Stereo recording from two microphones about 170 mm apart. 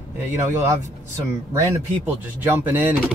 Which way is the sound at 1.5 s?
15° right (ahead or behind).